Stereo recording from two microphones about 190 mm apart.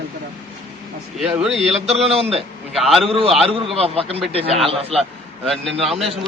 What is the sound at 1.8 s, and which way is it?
Speech, 35° right (ahead or behind).